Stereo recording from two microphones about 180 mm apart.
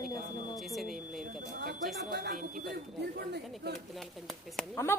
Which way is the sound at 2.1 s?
70° right (ahead or behind).